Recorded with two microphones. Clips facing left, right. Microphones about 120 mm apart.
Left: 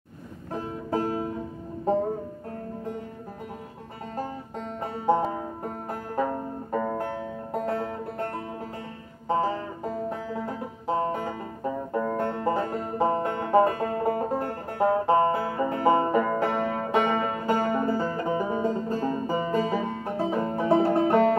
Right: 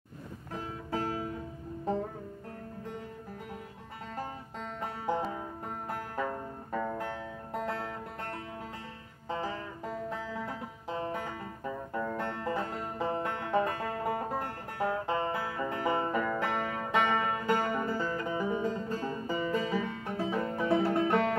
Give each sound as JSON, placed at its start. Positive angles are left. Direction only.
{"t": 0.6, "sound": "music", "side_deg": 40}
{"t": 5.9, "sound": "music", "side_deg": 35}
{"t": 9.3, "sound": "music", "side_deg": 35}